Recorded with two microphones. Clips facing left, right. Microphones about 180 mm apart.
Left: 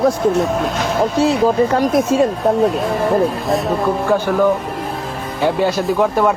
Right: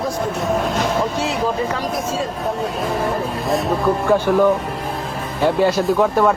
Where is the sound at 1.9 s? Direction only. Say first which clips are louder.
Left 9 dB; 65° left (ahead or behind).